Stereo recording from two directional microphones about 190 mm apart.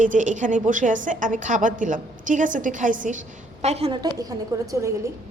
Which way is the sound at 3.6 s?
35° right (ahead or behind).